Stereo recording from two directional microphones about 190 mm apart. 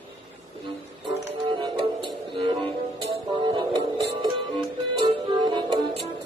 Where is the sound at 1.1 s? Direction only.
25° right (ahead or behind).